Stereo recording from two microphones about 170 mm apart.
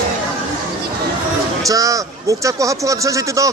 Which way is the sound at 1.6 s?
20° right (ahead or behind).